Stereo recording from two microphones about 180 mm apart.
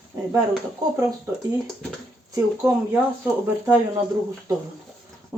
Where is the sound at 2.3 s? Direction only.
15° right (ahead or behind).